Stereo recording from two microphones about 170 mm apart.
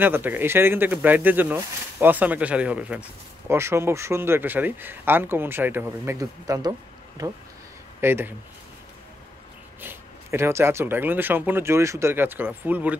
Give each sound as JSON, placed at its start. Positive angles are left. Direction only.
{"t": 0.0, "sound": "speech", "side_deg": -10}
{"t": 9.8, "sound": "speech", "side_deg": -15}